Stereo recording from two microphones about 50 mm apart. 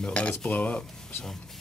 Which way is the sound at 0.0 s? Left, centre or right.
Left.